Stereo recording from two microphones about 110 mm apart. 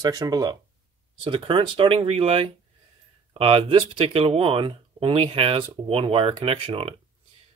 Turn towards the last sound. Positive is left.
turn(degrees=-55)  # may be behind; listen again after turning